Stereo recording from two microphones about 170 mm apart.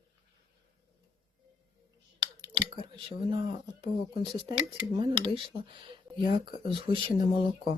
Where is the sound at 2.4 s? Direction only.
30° right (ahead or behind).